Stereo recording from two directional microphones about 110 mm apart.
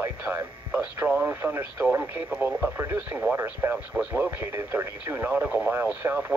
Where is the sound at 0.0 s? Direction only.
20° right (ahead or behind).